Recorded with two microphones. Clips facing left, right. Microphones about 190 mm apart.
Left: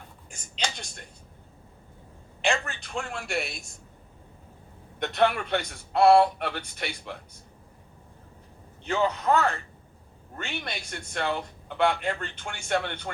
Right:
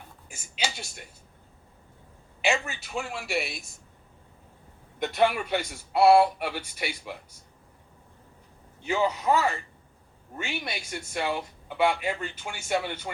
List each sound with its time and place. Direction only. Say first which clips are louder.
0.3 s a sound: even; 5° right (ahead or behind)
2.4 s a man's voice: even; 5° right (ahead or behind)
4.9 s speech: even; 5° right (ahead or behind)
8.8 s speech: even; 5° right (ahead or behind)